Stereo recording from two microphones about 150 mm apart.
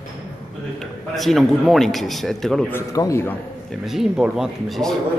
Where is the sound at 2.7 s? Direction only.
20° left (ahead or behind).